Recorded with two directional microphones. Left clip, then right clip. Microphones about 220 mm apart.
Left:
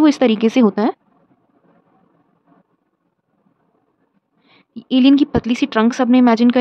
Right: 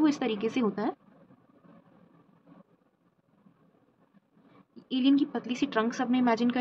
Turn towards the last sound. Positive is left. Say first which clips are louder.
# left 13 dB
turn(degrees=55)  # may be behind; listen again after turning